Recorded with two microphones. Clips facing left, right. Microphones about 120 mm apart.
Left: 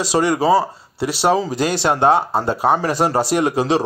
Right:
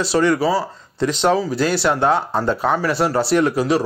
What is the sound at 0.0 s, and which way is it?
Speech, 15° left (ahead or behind).